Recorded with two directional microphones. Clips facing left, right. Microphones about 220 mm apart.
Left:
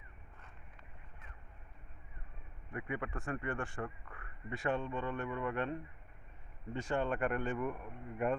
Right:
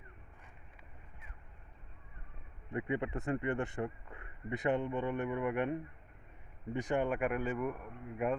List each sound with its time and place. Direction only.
2.7 s speech: 25° right (ahead or behind); by 8.4 s 5° right (ahead or behind)